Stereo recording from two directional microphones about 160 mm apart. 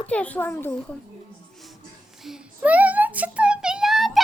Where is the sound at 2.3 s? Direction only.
10° right (ahead or behind).